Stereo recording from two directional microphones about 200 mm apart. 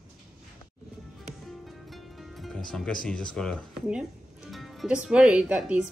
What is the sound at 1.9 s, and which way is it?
Music, centre (ahead or behind).